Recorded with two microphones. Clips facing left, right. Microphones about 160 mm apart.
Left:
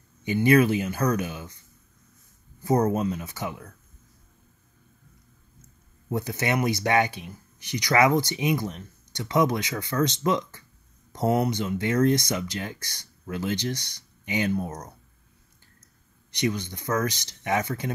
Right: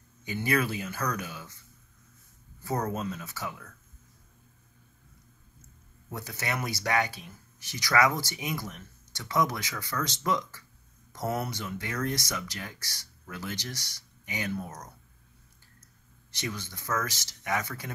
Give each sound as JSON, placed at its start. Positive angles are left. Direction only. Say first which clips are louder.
{"t": 0.2, "sound": "speech", "louder": "left 9 dB", "side_deg": 20}
{"t": 2.8, "sound": "speech", "louder": "left 8 dB", "side_deg": 15}
{"t": 6.0, "sound": "speech", "louder": "left 8 dB", "side_deg": 20}
{"t": 16.3, "sound": "speech", "louder": "left 10 dB", "side_deg": 15}